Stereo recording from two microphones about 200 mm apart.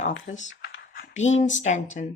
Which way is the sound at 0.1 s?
70° left (ahead or behind).